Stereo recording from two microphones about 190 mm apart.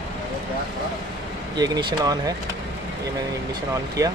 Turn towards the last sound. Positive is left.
turn(degrees=-20)  # may be behind; listen again after turning